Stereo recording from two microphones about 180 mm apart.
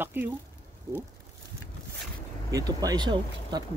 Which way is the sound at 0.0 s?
10° right (ahead or behind).